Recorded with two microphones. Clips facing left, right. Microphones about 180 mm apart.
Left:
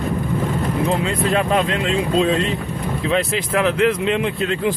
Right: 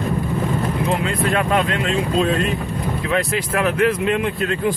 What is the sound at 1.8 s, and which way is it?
Speech, 25° left (ahead or behind).